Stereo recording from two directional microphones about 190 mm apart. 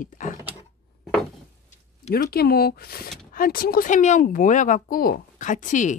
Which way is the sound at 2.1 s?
50° left (ahead or behind).